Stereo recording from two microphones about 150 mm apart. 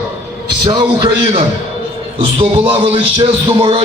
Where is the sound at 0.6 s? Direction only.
25° right (ahead or behind).